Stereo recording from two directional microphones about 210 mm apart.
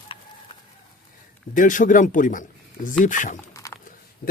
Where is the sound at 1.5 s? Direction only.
40° left (ahead or behind).